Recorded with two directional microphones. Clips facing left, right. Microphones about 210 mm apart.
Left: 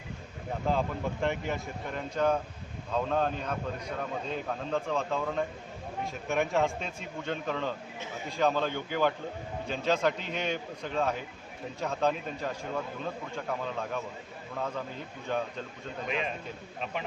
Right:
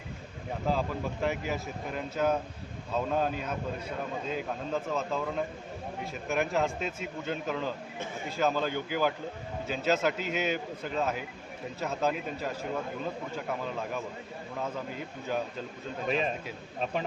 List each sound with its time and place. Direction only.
0.7 s speech: centre (ahead or behind)
15.3 s speech: 5° right (ahead or behind)
16.0 s a man's voice: 35° right (ahead or behind)